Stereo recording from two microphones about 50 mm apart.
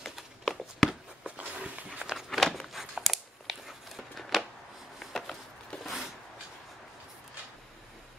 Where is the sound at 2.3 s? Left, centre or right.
Centre.